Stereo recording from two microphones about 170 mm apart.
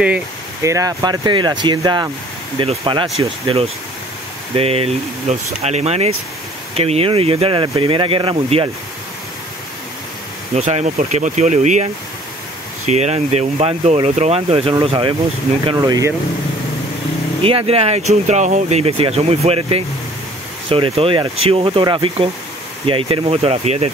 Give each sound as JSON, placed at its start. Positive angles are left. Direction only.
{"t": 0.0, "sound": "speech", "side_deg": -10}
{"t": 10.5, "sound": "speech", "side_deg": -40}
{"t": 17.4, "sound": "speech", "side_deg": -35}